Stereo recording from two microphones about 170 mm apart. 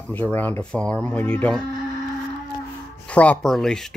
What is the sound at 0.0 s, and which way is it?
Speech, 10° left (ahead or behind).